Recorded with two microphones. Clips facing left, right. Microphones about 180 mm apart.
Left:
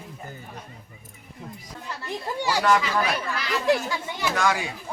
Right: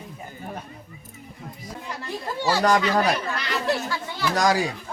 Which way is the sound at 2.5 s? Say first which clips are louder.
Right 2 dB; 40° right (ahead or behind).